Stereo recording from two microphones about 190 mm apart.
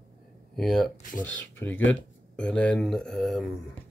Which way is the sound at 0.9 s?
45° left (ahead or behind).